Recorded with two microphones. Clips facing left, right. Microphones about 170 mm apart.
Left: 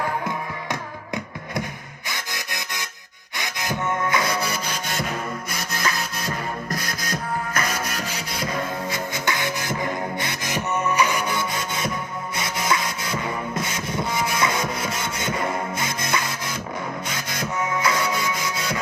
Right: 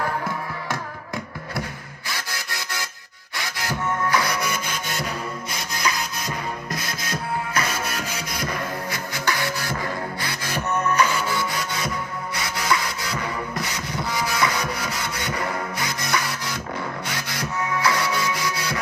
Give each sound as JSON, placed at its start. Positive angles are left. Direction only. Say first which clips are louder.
{"t": 0.3, "sound": "music", "louder": "even", "side_deg": 20}
{"t": 5.8, "sound": "music", "louder": "right 1 dB", "side_deg": -20}
{"t": 7.5, "sound": "music", "louder": "even", "side_deg": 40}
{"t": 8.9, "sound": "music", "louder": "left 1 dB", "side_deg": 20}